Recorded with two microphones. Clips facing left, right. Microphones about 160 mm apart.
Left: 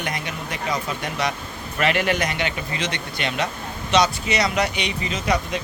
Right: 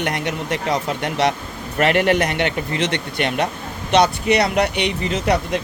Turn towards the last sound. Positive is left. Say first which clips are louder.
# right 4 dB
turn(degrees=-65)  # may be behind; listen again after turning